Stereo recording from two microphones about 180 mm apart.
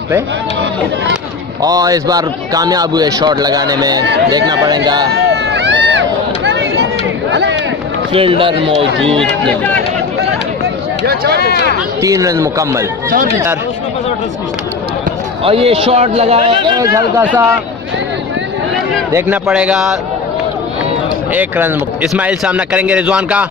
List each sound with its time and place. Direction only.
1.6 s a man's voice: 20° right (ahead or behind)
5.3 s run: 75° right (ahead or behind)
8.1 s a man's voice: 30° right (ahead or behind)
9.0 s speech: 5° left (ahead or behind)
11.1 s speech: 60° right (ahead or behind)
12.0 s a man's voice: 20° right (ahead or behind)
15.4 s a man's voice: 30° right (ahead or behind)
17.2 s a man's voice: 10° right (ahead or behind)
19.1 s speech: 10° right (ahead or behind)
21.3 s a man's voice: 10° right (ahead or behind)